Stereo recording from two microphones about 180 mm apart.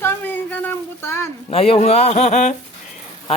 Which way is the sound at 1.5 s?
35° left (ahead or behind).